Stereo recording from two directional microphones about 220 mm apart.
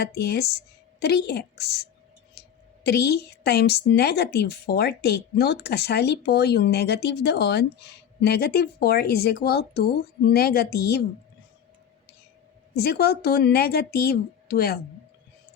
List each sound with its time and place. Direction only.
0.0 s a woman's voice: 45° left (ahead or behind)
12.7 s a woman's voice: 45° left (ahead or behind)